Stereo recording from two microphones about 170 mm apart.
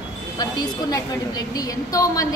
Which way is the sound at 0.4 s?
20° left (ahead or behind).